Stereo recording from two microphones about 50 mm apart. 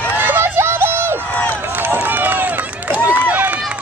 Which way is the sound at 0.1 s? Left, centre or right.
Right.